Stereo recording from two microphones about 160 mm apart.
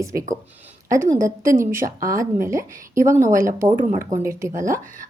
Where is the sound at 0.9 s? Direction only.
20° right (ahead or behind).